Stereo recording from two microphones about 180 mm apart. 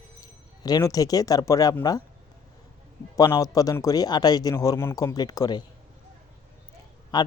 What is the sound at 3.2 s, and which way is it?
Speech, 20° left (ahead or behind).